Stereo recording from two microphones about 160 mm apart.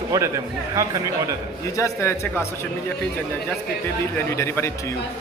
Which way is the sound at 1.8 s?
15° left (ahead or behind).